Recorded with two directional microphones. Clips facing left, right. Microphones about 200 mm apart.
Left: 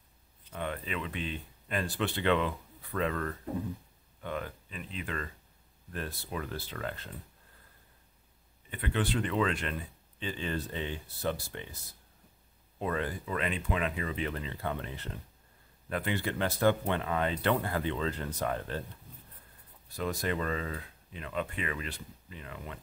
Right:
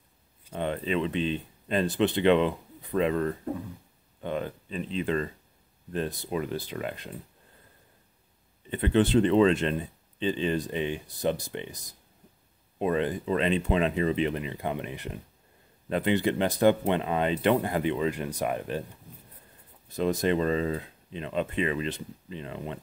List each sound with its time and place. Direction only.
0.5 s speech: 25° right (ahead or behind)
8.6 s speech: 25° right (ahead or behind)
19.9 s speech: 20° right (ahead or behind)